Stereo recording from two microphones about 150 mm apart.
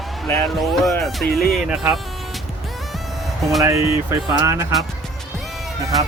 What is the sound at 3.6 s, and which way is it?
Speech, 20° right (ahead or behind).